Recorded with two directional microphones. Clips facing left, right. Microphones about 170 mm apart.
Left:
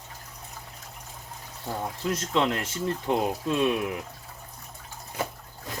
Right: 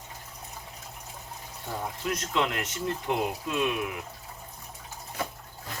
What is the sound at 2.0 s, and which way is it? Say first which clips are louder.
Speech: left 3 dB; 30° left (ahead or behind).